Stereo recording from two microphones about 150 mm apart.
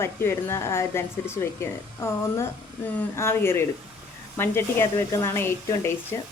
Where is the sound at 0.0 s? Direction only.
15° left (ahead or behind).